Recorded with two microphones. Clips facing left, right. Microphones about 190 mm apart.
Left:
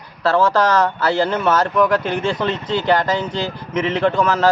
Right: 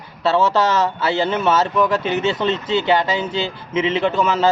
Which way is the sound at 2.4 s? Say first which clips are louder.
Right 1 dB; 25° right (ahead or behind).